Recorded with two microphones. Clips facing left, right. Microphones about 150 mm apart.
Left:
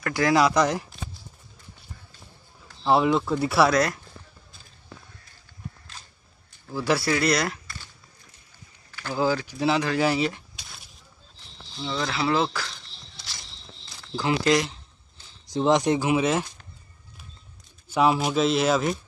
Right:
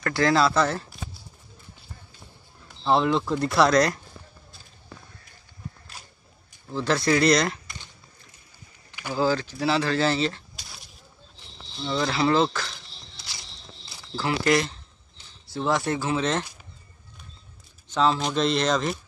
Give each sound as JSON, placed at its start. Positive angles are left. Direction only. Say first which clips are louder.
{"t": 0.0, "sound": "speech", "louder": "even", "side_deg": 15}
{"t": 2.8, "sound": "speech", "louder": "left 1 dB", "side_deg": 5}
{"t": 5.9, "sound": "walk", "louder": "right 1 dB", "side_deg": -10}
{"t": 6.7, "sound": "speech", "louder": "right 1 dB", "side_deg": 10}
{"t": 7.6, "sound": "a sound", "louder": "even", "side_deg": -20}
{"t": 9.1, "sound": "speech", "louder": "right 1 dB", "side_deg": 15}
{"t": 11.8, "sound": "speech", "louder": "right 3 dB", "side_deg": 0}
{"t": 14.1, "sound": "speech", "louder": "left 1 dB", "side_deg": 20}
{"t": 17.8, "sound": "speech", "louder": "left 2 dB", "side_deg": 10}